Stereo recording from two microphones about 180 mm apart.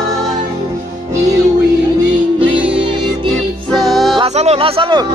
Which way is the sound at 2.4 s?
5° right (ahead or behind).